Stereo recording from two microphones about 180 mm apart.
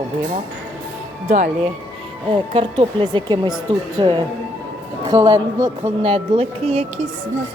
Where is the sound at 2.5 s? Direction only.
30° right (ahead or behind).